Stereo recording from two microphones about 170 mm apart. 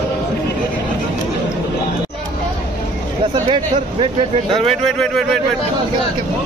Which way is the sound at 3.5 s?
30° right (ahead or behind).